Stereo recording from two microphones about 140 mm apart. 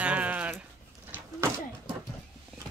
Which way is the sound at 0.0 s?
10° right (ahead or behind).